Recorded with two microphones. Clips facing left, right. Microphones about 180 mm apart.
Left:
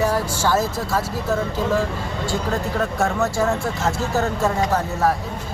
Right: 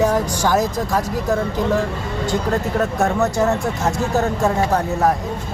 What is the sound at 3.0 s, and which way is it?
A man's voice, 20° right (ahead or behind).